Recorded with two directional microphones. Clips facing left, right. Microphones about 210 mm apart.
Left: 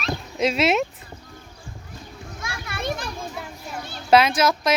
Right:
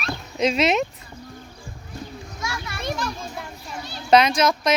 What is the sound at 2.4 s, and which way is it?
Children playing, 55° left (ahead or behind).